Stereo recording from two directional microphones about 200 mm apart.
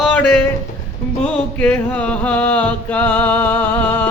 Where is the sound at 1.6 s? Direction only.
5° left (ahead or behind).